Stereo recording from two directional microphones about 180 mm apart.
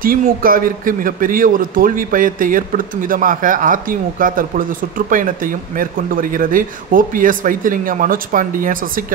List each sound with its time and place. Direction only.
0.0 s a man's voice: 50° right (ahead or behind)